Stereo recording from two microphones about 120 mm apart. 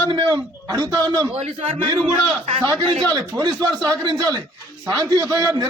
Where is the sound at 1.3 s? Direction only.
60° right (ahead or behind).